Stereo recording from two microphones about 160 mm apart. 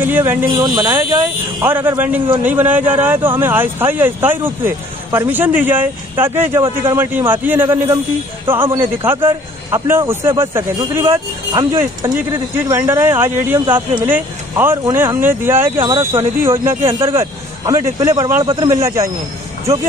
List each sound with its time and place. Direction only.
0.0 s speech: 10° right (ahead or behind)
0.6 s speech: 25° right (ahead or behind)
1.6 s speech: 10° right (ahead or behind)
18.4 s speech: 30° right (ahead or behind)
18.7 s speech: 20° right (ahead or behind)